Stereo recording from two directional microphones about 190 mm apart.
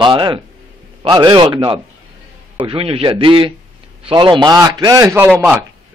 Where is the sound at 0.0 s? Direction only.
25° right (ahead or behind).